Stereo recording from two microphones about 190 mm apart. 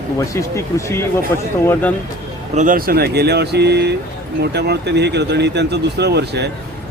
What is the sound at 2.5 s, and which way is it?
Speech, 40° right (ahead or behind).